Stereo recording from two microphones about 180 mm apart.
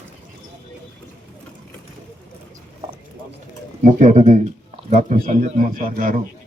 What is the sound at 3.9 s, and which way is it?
Speech, 45° right (ahead or behind).